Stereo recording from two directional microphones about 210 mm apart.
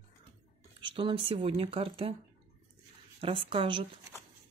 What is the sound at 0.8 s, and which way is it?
Speech, 25° right (ahead or behind).